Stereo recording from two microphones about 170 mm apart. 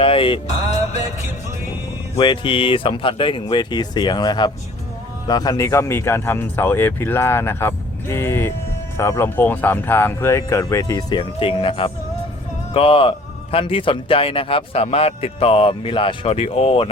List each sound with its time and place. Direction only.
0.0 s speech: 30° left (ahead or behind)
2.1 s speech: 30° left (ahead or behind)